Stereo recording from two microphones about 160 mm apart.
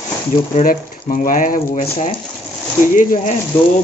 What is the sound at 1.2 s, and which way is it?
Speech, 55° left (ahead or behind).